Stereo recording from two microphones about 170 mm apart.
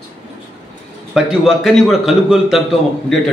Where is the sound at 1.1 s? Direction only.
Centre (ahead or behind).